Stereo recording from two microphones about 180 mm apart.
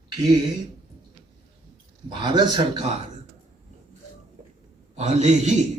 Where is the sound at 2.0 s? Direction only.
25° right (ahead or behind).